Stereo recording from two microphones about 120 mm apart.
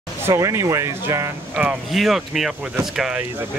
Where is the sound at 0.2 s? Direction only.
25° right (ahead or behind).